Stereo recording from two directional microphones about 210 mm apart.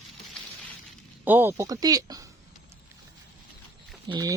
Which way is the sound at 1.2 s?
10° right (ahead or behind).